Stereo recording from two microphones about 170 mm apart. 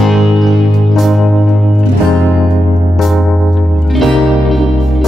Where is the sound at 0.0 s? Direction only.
Centre (ahead or behind).